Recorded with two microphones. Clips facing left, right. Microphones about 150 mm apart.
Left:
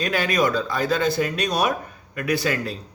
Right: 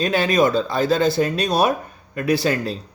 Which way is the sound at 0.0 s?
25° right (ahead or behind).